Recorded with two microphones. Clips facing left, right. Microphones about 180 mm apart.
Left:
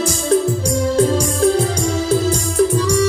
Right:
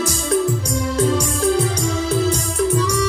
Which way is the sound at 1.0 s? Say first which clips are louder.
Left 2 dB; 30° left (ahead or behind).